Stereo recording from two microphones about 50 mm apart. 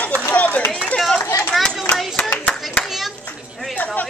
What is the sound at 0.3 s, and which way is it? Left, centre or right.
Run, left.